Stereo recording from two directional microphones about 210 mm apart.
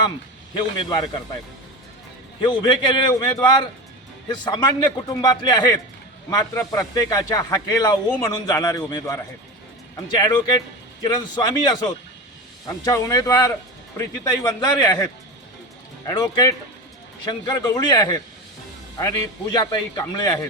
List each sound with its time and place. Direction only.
0.5 s a man's voice: 20° left (ahead or behind)
2.4 s a man's voice: 20° left (ahead or behind)
10.2 s a man's voice: 20° left (ahead or behind)